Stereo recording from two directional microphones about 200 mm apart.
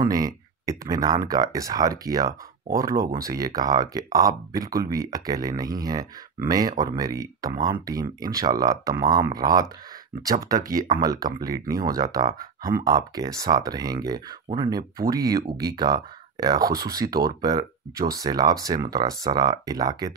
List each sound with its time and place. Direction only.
0.0 s speech: 20° right (ahead or behind)
11.0 s speech: 20° right (ahead or behind)